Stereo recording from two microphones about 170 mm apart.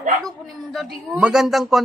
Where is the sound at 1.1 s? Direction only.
5° right (ahead or behind).